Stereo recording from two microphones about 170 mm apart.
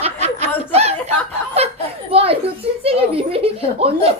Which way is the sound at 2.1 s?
35° right (ahead or behind).